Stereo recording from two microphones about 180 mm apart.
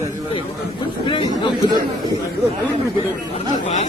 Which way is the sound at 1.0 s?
25° left (ahead or behind).